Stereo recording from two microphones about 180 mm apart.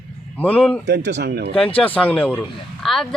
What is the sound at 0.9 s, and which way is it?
Speech, 70° right (ahead or behind).